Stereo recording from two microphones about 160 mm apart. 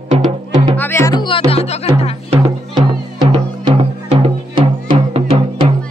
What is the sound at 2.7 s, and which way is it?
Music, 25° right (ahead or behind).